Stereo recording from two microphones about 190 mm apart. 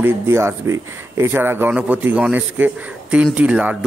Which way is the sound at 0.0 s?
15° right (ahead or behind).